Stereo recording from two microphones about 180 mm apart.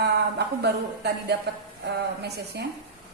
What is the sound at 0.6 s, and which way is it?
A woman's voice, 65° right (ahead or behind).